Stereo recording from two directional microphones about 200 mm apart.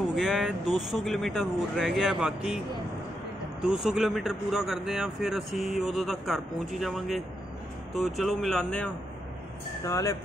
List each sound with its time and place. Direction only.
0.1 s speech: centre (ahead or behind)
3.6 s speech: 5° right (ahead or behind)
9.8 s speech: 15° left (ahead or behind)